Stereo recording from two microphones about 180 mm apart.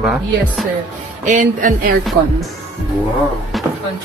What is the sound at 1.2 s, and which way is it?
Speech, 45° right (ahead or behind).